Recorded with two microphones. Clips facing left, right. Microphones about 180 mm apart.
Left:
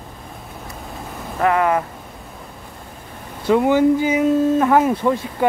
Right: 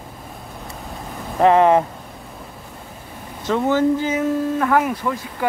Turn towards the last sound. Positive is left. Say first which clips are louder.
# left 5 dB
turn(degrees=25)  # may be behind; listen again after turning